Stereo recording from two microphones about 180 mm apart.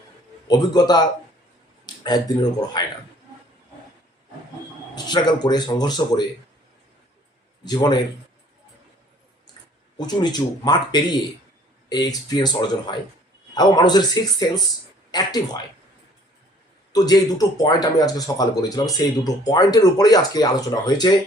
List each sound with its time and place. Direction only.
0.4 s speech: 20° left (ahead or behind)
2.0 s speech: 20° left (ahead or behind)
5.0 s speech: 25° left (ahead or behind)
7.6 s speech: 25° left (ahead or behind)
10.1 s speech: 25° left (ahead or behind)
16.9 s speech: 20° left (ahead or behind)